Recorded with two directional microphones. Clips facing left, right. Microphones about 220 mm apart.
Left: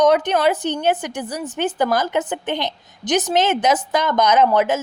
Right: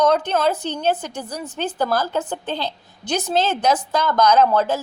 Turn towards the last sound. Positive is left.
turn(degrees=20)  # may be behind; listen again after turning